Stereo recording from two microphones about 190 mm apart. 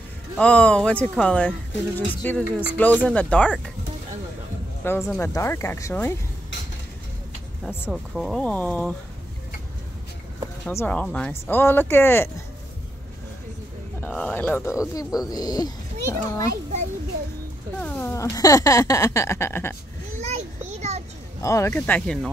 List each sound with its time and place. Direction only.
0.4 s speech: 5° left (ahead or behind)
4.8 s speech: 10° left (ahead or behind)
7.6 s speech: 10° left (ahead or behind)
7.9 s speech: centre (ahead or behind)
10.6 s speech: 10° left (ahead or behind)
14.0 s speech: 10° left (ahead or behind)
17.7 s speech: 10° left (ahead or behind)
20.2 s children playing: 35° right (ahead or behind)
21.4 s speech: 15° left (ahead or behind)